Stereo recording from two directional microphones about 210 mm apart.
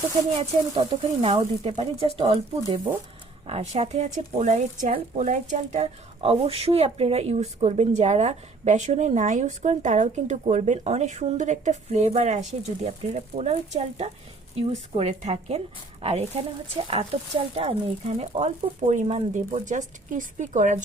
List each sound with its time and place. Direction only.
0.3 s a woman's voice: 25° right (ahead or behind)